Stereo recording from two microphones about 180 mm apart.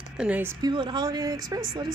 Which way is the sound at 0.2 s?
10° right (ahead or behind).